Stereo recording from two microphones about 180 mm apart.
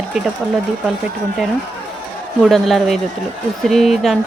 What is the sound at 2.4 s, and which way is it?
Speech, centre (ahead or behind).